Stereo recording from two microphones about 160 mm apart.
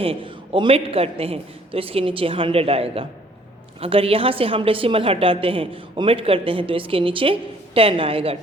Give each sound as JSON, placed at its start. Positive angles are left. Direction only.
{"t": 0.0, "sound": "a woman's voice", "side_deg": -35}